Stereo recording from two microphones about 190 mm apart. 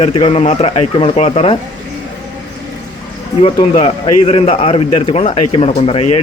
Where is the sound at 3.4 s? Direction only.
30° left (ahead or behind).